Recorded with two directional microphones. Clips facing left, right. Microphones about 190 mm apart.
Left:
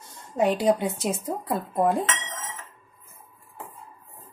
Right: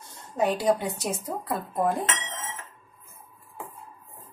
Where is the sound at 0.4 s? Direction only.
20° left (ahead or behind).